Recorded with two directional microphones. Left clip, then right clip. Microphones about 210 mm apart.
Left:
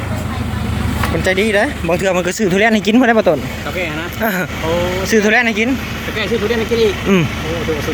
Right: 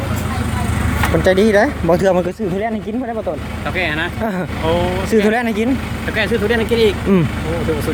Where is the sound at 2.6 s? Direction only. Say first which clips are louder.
Left 9 dB; 25° left (ahead or behind).